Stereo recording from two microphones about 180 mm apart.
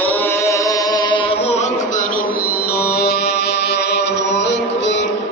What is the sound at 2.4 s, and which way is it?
Music, 60° left (ahead or behind).